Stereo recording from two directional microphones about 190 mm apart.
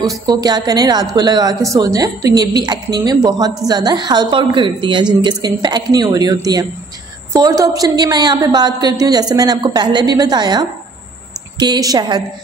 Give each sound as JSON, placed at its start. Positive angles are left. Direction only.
{"t": 0.3, "sound": "a woman's voice", "side_deg": -20}